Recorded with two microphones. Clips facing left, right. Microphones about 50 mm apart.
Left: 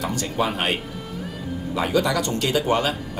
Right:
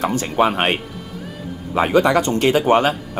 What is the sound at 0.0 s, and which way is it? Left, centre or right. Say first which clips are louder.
Speech: right 7 dB; right.